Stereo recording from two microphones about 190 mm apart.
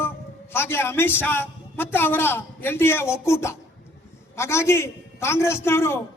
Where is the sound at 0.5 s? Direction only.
10° left (ahead or behind).